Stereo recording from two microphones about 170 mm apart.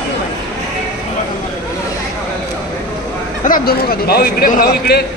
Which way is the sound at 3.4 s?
55° left (ahead or behind).